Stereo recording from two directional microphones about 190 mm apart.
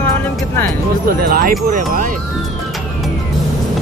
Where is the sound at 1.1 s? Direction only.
50° right (ahead or behind).